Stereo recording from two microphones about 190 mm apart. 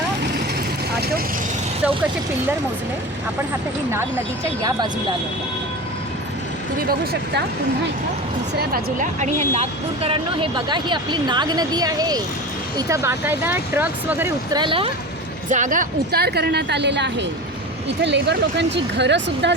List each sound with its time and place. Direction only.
4.4 s speech: 20° right (ahead or behind)
6.8 s a woman's voice: 55° right (ahead or behind)
8.5 s speech: 50° right (ahead or behind)
9.2 s speech: 30° right (ahead or behind); by 14.6 s 10° right (ahead or behind)
14.6 s speech: 25° right (ahead or behind)
15.4 s a woman's voice: 40° right (ahead or behind); by 19.5 s 65° right (ahead or behind)